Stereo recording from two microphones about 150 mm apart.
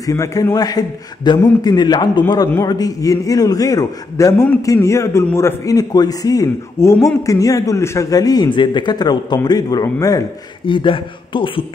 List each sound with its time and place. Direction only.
0.0 s a man's voice: 20° left (ahead or behind)
10.6 s speech: 35° left (ahead or behind)